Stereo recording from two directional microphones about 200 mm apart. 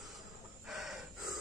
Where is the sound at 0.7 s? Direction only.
Centre (ahead or behind).